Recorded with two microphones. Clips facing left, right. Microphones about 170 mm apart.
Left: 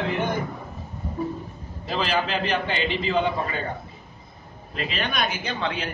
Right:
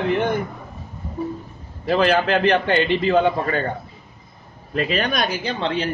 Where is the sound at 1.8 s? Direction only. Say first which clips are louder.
Right 8 dB; 60° right (ahead or behind).